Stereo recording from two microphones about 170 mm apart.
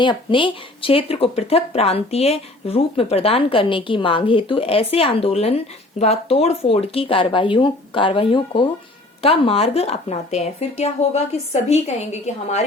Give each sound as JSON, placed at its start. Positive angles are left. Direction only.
{"t": 0.0, "sound": "speech", "side_deg": 30}